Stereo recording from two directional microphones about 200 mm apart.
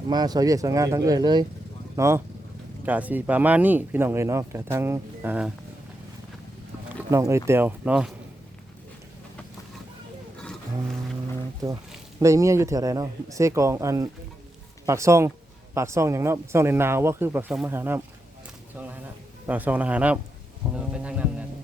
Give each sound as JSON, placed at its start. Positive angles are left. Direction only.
{"t": 0.1, "sound": "speech", "side_deg": -20}
{"t": 7.1, "sound": "speech", "side_deg": -15}
{"t": 12.2, "sound": "speech", "side_deg": -15}
{"t": 19.5, "sound": "speech", "side_deg": -10}